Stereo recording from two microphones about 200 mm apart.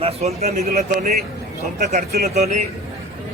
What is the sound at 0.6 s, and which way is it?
Speech, 50° right (ahead or behind).